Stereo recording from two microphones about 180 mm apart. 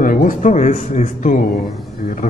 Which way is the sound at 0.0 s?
50° left (ahead or behind).